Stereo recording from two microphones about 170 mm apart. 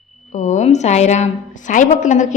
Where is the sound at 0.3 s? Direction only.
45° left (ahead or behind).